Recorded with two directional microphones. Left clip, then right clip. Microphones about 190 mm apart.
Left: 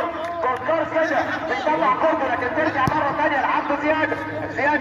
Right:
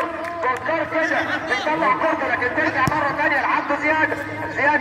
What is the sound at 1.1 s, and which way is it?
Speech, 40° left (ahead or behind).